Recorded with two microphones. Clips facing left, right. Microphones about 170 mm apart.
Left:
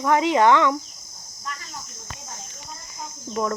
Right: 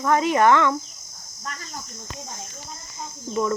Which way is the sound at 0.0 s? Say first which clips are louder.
Left 1 dB; 15° left (ahead or behind).